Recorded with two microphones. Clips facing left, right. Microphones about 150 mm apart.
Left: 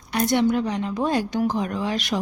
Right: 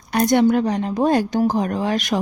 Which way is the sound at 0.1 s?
45° right (ahead or behind).